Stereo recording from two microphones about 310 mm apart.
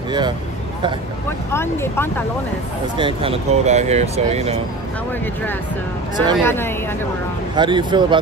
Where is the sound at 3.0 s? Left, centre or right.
Centre.